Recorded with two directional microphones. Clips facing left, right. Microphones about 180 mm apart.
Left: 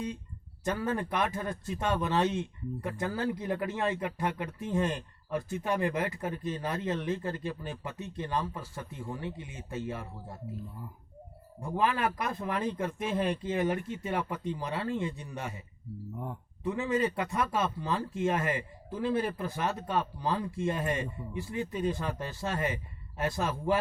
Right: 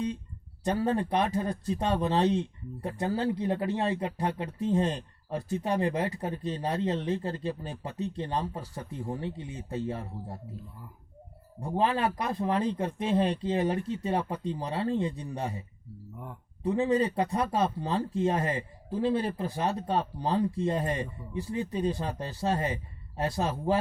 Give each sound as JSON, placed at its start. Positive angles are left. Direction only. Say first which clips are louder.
{"t": 0.6, "sound": "speech", "louder": "right 4 dB", "side_deg": -35}
{"t": 11.6, "sound": "speech", "louder": "right 2 dB", "side_deg": -30}
{"t": 16.6, "sound": "speech", "louder": "right 4 dB", "side_deg": -35}